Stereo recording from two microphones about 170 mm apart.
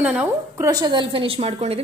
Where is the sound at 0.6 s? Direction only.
20° right (ahead or behind).